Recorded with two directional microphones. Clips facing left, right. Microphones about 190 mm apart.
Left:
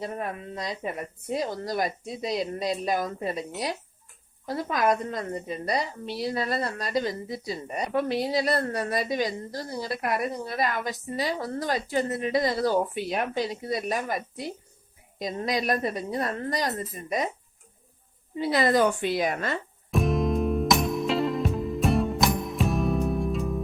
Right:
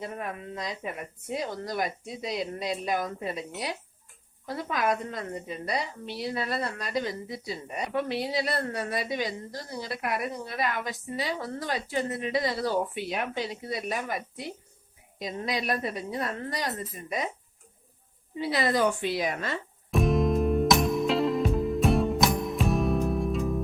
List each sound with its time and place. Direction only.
0.0 s a woman's voice: 35° left (ahead or behind)
18.3 s a woman's voice: 45° left (ahead or behind)
19.9 s music: centre (ahead or behind)